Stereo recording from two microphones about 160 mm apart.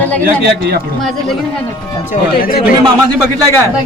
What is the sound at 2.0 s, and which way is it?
Speech, 65° left (ahead or behind).